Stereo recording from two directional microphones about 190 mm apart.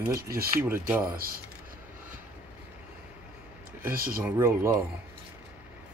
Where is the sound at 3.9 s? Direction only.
50° right (ahead or behind).